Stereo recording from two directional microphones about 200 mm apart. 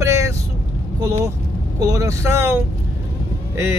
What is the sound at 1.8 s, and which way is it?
Speech, 15° right (ahead or behind).